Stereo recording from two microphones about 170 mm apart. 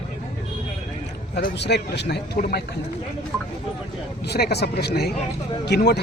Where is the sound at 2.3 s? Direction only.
65° left (ahead or behind).